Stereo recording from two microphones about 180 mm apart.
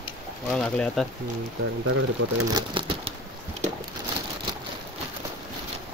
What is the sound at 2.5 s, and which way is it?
Speech, 30° right (ahead or behind).